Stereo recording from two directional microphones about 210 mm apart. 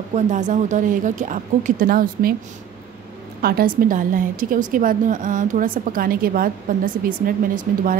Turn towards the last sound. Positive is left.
turn(degrees=-40)  # may be behind; listen again after turning